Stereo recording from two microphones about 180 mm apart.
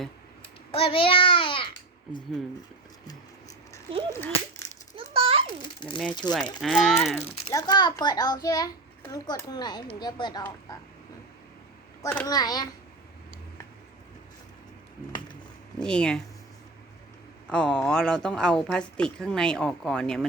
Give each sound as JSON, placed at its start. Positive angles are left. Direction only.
{"t": 0.7, "sound": "a child's voice", "side_deg": 30}
{"t": 4.1, "sound": "speech", "side_deg": 15}
{"t": 4.9, "sound": "a sound", "side_deg": -30}
{"t": 5.6, "sound": "a sound", "side_deg": 25}
{"t": 6.2, "sound": "speech", "side_deg": 5}
{"t": 7.5, "sound": "a child's voice", "side_deg": 25}
{"t": 12.0, "sound": "a child's voice", "side_deg": 20}
{"t": 15.8, "sound": "speech", "side_deg": 5}
{"t": 17.5, "sound": "speech", "side_deg": 5}